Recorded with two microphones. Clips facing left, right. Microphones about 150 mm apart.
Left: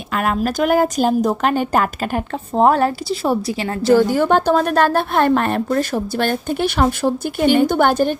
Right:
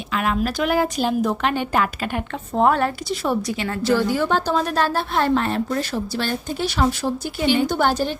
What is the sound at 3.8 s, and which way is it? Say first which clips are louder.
A woman's voice: left 6 dB; 45° left (ahead or behind).